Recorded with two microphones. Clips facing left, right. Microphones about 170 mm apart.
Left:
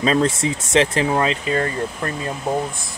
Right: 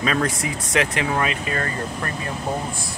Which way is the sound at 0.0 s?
25° left (ahead or behind).